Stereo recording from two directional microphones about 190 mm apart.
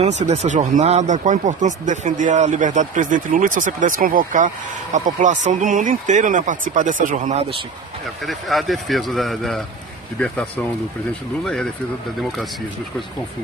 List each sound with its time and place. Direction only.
0.0 s speech: 35° right (ahead or behind)
8.3 s speech: centre (ahead or behind)